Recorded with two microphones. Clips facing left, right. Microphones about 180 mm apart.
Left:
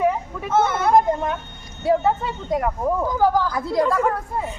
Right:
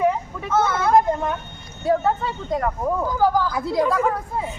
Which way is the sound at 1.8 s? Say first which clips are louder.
Left 1 dB; 10° left (ahead or behind).